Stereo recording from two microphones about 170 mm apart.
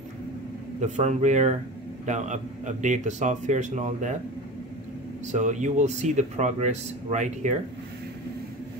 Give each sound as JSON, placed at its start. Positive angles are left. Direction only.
{"t": 0.7, "sound": "speech", "side_deg": -45}
{"t": 5.2, "sound": "speech", "side_deg": -45}